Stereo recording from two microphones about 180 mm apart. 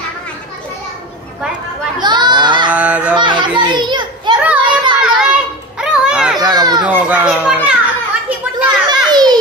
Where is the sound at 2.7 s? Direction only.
5° right (ahead or behind).